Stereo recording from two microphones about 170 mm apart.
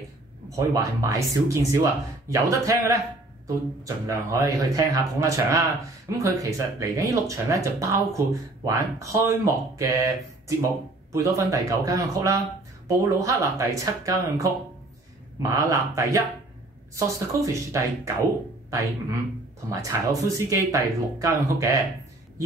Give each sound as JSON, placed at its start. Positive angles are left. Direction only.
{"t": 0.5, "sound": "speech", "side_deg": -20}